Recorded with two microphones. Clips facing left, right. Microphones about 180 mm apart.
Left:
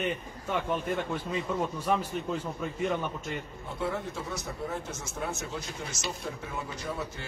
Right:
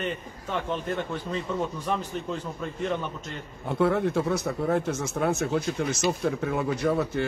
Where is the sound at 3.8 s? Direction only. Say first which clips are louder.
Right 10 dB; 65° right (ahead or behind).